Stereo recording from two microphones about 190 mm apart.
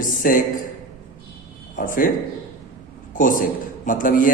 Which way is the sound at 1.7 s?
45° left (ahead or behind).